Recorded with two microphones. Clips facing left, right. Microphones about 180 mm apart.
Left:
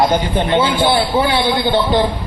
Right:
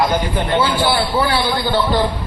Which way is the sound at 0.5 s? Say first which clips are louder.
Left 2 dB; 20° left (ahead or behind).